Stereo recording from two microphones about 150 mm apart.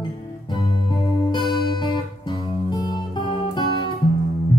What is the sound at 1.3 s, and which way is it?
Music, 30° left (ahead or behind).